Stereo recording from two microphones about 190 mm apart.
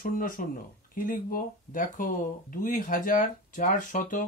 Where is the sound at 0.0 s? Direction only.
45° left (ahead or behind).